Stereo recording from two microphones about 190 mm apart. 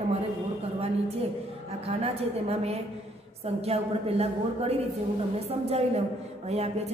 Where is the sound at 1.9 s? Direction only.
35° right (ahead or behind).